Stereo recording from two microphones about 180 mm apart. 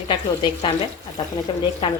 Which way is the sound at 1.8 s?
30° left (ahead or behind).